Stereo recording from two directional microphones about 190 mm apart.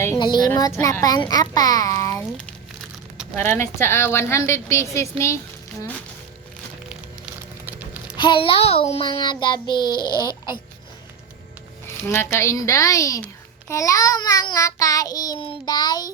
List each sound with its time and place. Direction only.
0.2 s a child's voice: 25° left (ahead or behind)
3.3 s a woman's voice: 15° left (ahead or behind)
7.6 s a sound: 10° right (ahead or behind)
8.1 s a child's voice: 25° left (ahead or behind)
12.0 s a woman's voice: 15° left (ahead or behind)